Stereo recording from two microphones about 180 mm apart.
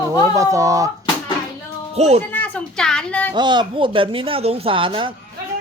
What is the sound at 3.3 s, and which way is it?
Speech, 25° right (ahead or behind).